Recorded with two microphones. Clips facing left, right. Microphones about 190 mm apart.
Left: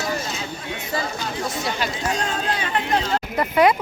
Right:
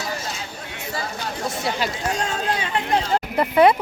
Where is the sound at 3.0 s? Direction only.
25° right (ahead or behind).